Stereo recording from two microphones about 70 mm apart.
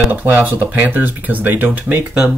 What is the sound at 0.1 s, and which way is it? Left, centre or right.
Speech, right.